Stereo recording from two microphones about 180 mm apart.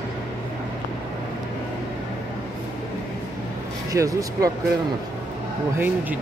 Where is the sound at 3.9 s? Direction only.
20° right (ahead or behind).